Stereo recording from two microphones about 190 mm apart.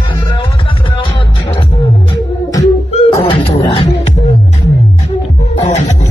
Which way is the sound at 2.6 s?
15° left (ahead or behind).